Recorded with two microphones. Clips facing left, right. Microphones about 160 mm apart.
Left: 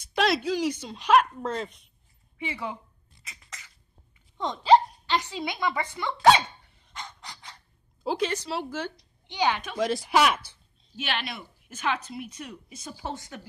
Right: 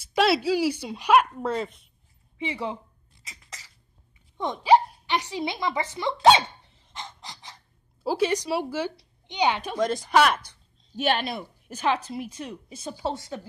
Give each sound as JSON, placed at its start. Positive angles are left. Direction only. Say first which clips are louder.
{"t": 0.1, "sound": "speech", "louder": "right 3 dB", "side_deg": -5}
{"t": 2.3, "sound": "speech", "louder": "right 3 dB", "side_deg": -20}
{"t": 3.3, "sound": "a sound", "louder": "right 1 dB", "side_deg": -30}
{"t": 4.4, "sound": "speech", "louder": "even", "side_deg": -15}
{"t": 6.9, "sound": "pant", "louder": "right 1 dB", "side_deg": -25}
{"t": 8.0, "sound": "speech", "louder": "right 4 dB", "side_deg": -5}
{"t": 9.8, "sound": "speech", "louder": "right 1 dB", "side_deg": 5}
{"t": 11.0, "sound": "a woman's voice", "louder": "right 8 dB", "side_deg": -40}